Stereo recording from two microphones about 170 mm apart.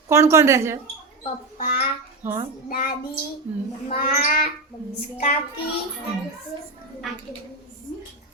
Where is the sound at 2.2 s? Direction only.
10° right (ahead or behind).